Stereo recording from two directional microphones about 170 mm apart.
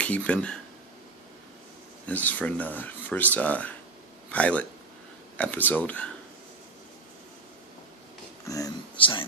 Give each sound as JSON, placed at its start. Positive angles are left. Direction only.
{"t": 0.0, "sound": "speech", "side_deg": 10}
{"t": 2.0, "sound": "speech", "side_deg": 10}
{"t": 8.5, "sound": "speech", "side_deg": 20}